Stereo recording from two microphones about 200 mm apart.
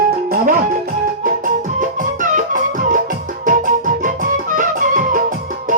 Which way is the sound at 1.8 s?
40° right (ahead or behind).